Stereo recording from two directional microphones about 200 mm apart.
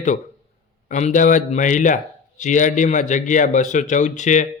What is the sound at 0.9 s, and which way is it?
A man's voice, 35° left (ahead or behind).